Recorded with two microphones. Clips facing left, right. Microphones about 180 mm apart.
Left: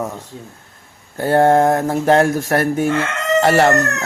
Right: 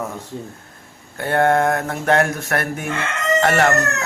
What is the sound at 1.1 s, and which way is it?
Mantra, 35° left (ahead or behind).